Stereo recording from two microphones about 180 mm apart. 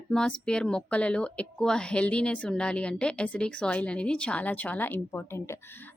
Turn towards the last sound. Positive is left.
turn(degrees=10)  # may be behind; listen again after turning